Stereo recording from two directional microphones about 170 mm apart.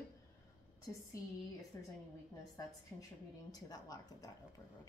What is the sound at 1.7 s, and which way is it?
Speech, 15° left (ahead or behind).